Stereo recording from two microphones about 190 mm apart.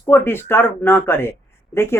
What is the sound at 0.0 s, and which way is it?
Speech, 10° left (ahead or behind).